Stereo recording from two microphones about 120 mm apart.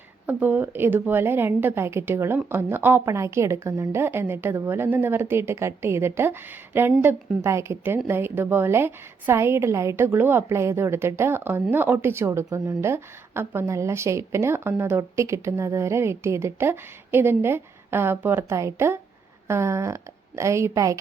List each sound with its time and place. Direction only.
0.3 s a woman's voice: 15° right (ahead or behind)